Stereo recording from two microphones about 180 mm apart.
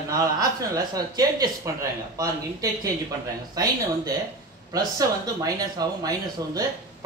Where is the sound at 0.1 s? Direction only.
20° right (ahead or behind).